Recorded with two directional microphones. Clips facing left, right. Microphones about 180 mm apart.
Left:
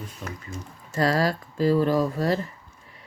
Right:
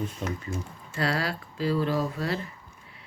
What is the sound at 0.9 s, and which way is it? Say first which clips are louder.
Speech: left 6 dB; 40° left (ahead or behind).